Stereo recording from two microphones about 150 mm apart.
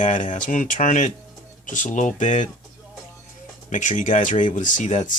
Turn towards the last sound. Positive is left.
turn(degrees=55)  # may be behind; listen again after turning